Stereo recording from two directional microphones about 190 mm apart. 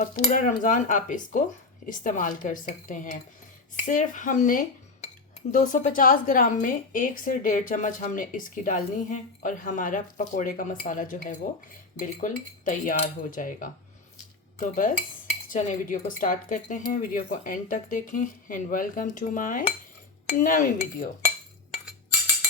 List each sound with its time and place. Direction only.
0.0 s a woman's voice: 45° left (ahead or behind)
3.8 s cutlery: 40° left (ahead or behind)
5.5 s a woman's voice: 40° left (ahead or behind)